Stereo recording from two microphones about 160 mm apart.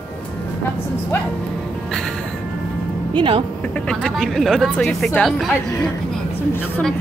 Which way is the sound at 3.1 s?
30° right (ahead or behind).